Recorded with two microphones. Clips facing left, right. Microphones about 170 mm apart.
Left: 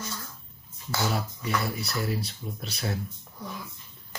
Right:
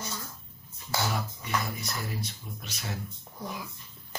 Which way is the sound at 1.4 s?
35° left (ahead or behind).